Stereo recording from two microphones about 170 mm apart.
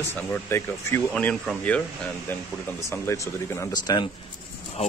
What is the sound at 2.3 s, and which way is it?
Speech, 10° left (ahead or behind).